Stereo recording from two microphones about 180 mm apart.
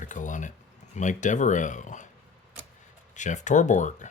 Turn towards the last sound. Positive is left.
turn(degrees=45)  # may be behind; listen again after turning